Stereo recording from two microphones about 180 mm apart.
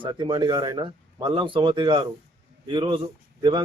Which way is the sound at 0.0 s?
25° right (ahead or behind).